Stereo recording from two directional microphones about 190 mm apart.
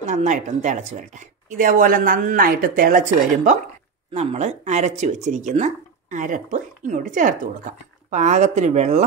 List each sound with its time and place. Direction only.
0.0 s speech: 40° right (ahead or behind)